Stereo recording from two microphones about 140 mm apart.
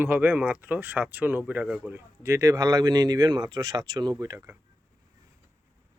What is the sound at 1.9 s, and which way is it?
Speech, 20° right (ahead or behind).